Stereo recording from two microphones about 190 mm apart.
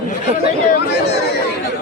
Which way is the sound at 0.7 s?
60° left (ahead or behind).